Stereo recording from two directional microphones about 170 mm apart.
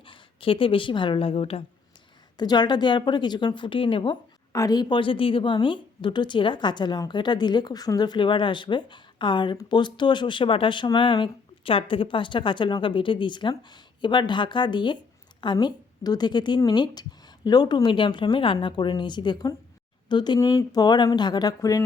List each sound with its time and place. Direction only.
0.0 s a woman's voice: 30° left (ahead or behind)